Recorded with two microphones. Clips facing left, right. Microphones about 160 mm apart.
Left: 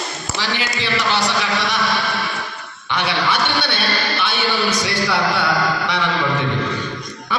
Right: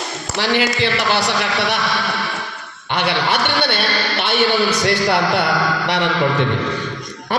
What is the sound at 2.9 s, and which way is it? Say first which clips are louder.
Speech: right 2 dB; 65° right (ahead or behind).